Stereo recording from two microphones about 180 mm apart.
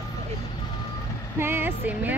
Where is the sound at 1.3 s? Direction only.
10° right (ahead or behind).